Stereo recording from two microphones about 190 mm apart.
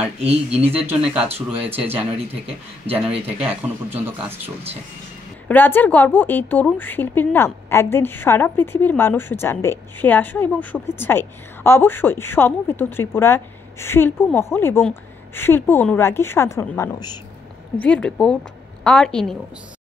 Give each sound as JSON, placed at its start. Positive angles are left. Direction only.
{"t": 0.2, "sound": "speech", "side_deg": -30}
{"t": 0.8, "sound": "speech", "side_deg": -5}
{"t": 5.5, "sound": "a woman's voice", "side_deg": 10}
{"t": 17.7, "sound": "speech", "side_deg": 5}